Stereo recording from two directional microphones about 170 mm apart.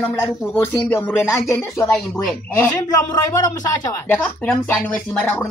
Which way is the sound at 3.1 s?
20° left (ahead or behind).